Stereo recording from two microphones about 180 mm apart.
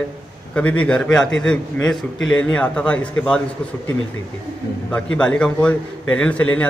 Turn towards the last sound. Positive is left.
turn(degrees=10)  # may be behind; listen again after turning